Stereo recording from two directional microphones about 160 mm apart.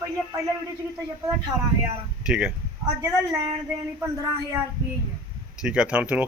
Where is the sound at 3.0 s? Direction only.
25° right (ahead or behind).